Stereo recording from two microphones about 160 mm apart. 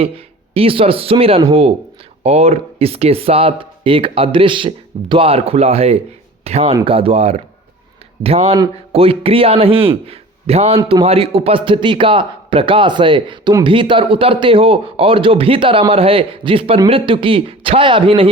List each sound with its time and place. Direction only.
0.5 s a man's voice: 35° right (ahead or behind)